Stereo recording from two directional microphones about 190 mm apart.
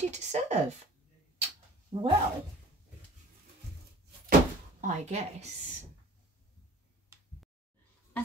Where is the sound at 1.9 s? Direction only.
35° right (ahead or behind).